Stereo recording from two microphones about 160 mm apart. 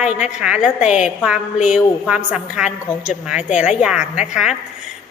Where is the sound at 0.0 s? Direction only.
5° right (ahead or behind).